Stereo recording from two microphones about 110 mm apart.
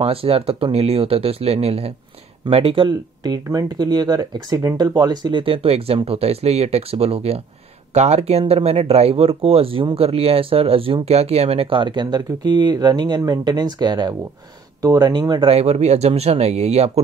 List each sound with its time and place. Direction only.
0.0 s speech: 60° right (ahead or behind)
2.4 s speech: 55° right (ahead or behind)
3.4 s speech: 35° right (ahead or behind)
5.4 s speech: 55° right (ahead or behind)
7.9 s speech: 85° right; by 15.4 s 35° right (ahead or behind)
15.4 s speech: 75° right (ahead or behind)